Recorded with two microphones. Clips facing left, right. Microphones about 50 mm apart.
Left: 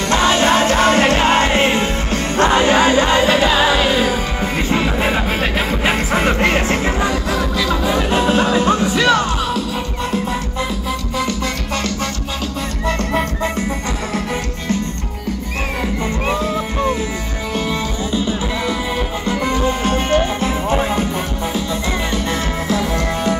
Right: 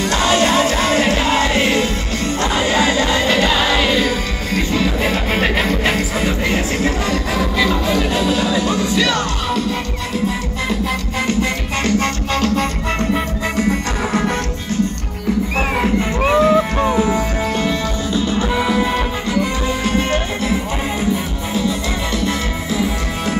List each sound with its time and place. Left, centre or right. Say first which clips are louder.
0.1 s music: left 2 dB; left
3.3 s music: left 2 dB; centre
4.6 s music: left 1 dB; left
5.3 s music: right 2 dB; centre
5.9 s music: left 3 dB; left
7.3 s music: right 2 dB; centre
8.1 s music: left 2 dB; left
11.8 s music: right 9 dB; right
16.3 s music: right 6 dB; right
17.6 s music: right 1 dB; centre
19.8 s music: left 2 dB; left
22.7 s music: left 2 dB; centre